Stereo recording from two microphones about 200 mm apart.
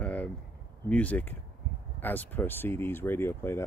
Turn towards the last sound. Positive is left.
turn(degrees=10)  # may be behind; listen again after turning